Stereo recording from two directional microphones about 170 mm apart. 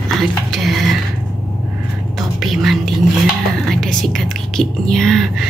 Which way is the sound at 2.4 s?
Centre (ahead or behind).